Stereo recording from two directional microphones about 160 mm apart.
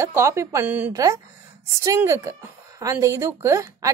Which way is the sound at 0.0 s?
15° right (ahead or behind).